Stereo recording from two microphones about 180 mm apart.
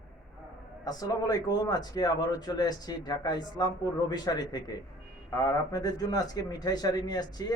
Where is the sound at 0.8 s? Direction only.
20° left (ahead or behind).